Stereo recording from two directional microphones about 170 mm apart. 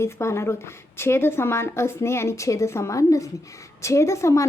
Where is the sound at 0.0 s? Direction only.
15° left (ahead or behind).